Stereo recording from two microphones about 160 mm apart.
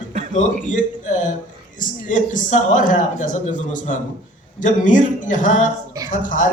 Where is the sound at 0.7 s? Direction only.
50° left (ahead or behind).